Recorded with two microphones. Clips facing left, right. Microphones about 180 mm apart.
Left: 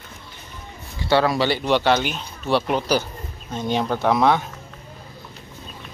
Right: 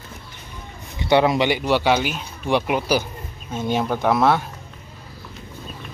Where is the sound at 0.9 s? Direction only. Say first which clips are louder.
Right 2 dB; 20° right (ahead or behind); by 4.5 s centre (ahead or behind).